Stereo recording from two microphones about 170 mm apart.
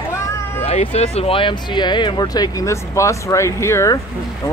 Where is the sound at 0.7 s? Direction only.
40° left (ahead or behind); by 4.0 s 15° left (ahead or behind).